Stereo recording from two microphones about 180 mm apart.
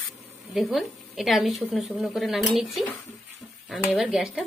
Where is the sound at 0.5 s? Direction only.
Centre (ahead or behind).